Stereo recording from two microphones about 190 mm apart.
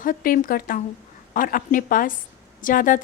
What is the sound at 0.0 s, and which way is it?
A woman's voice, 50° left (ahead or behind).